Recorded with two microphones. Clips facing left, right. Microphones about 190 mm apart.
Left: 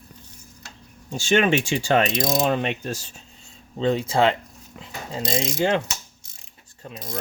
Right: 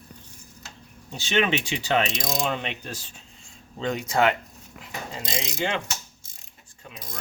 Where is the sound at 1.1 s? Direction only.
45° left (ahead or behind).